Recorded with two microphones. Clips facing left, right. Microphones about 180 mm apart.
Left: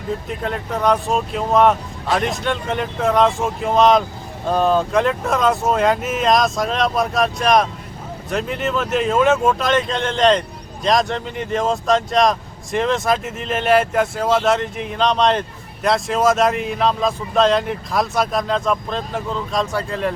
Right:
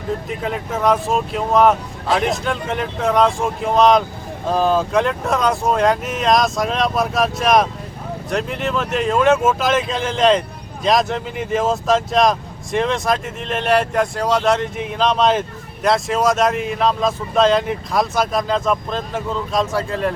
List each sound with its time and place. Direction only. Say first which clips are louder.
0.3 s speech: right 1 dB; centre (ahead or behind)